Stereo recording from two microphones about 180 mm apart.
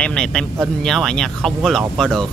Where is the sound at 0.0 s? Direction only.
5° left (ahead or behind).